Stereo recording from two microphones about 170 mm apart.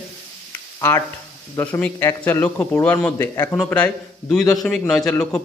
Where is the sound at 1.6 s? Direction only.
10° left (ahead or behind).